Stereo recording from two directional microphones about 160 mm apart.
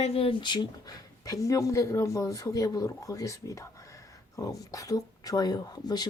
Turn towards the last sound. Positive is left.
turn(degrees=25)  # may be behind; listen again after turning